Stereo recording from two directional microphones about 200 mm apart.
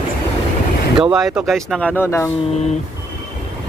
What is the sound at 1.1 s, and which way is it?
Speech, centre (ahead or behind).